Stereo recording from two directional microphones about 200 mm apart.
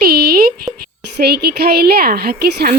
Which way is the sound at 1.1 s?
55° right (ahead or behind).